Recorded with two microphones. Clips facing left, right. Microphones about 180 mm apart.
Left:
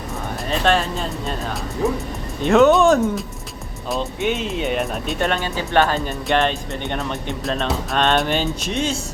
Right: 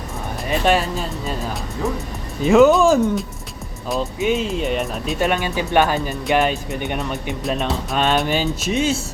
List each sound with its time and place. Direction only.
0.4 s speech: 10° right (ahead or behind)
5.3 s speech: 15° right (ahead or behind)
6.1 s speech: 5° right (ahead or behind)
8.0 s speech: centre (ahead or behind)